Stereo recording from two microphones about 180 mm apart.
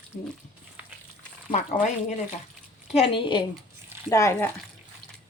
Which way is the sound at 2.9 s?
30° left (ahead or behind).